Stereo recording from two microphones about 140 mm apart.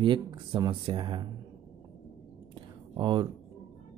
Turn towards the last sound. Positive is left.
turn(degrees=-35)  # may be behind; listen again after turning